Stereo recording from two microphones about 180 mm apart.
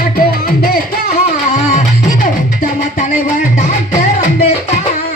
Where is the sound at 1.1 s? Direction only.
40° left (ahead or behind).